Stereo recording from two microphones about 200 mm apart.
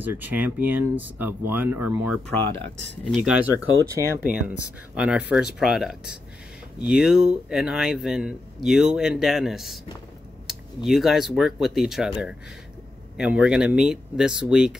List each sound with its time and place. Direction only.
0.0 s speech: 10° right (ahead or behind)
2.2 s speech: 10° left (ahead or behind)
3.1 s speech: 5° right (ahead or behind)